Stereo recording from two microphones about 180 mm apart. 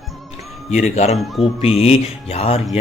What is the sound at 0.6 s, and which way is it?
Speech, 40° left (ahead or behind).